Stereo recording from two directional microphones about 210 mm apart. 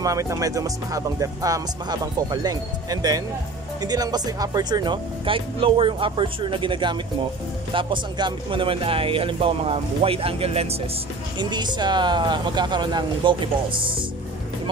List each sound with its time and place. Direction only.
0.0 s speech: 15° right (ahead or behind)